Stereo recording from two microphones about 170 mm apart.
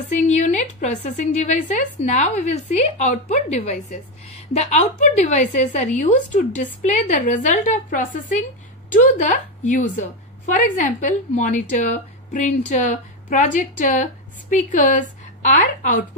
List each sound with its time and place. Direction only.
0.1 s a woman's voice: 45° left (ahead or behind)